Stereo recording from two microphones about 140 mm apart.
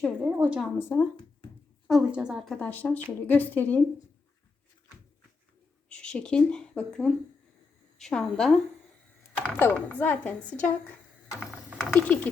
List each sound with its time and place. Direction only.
0.0 s a woman's voice: centre (ahead or behind)
0.3 s a woman's voice: 10° right (ahead or behind)
0.8 s speech: 15° left (ahead or behind)
1.9 s a woman's voice: 5° right (ahead or behind)
2.6 s speech: 10° left (ahead or behind)
5.9 s a woman's voice: 5° left (ahead or behind)
11.5 s ratchet: 5° right (ahead or behind)
11.9 s speech: 10° left (ahead or behind)